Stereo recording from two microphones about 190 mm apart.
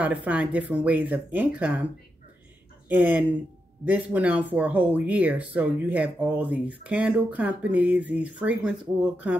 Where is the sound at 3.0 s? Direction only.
10° right (ahead or behind).